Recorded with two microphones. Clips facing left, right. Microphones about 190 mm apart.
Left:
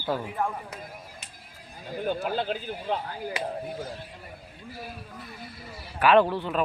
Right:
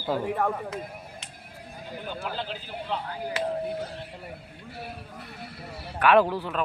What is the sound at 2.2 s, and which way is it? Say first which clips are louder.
Speech: left 5 dB; 50° left (ahead or behind).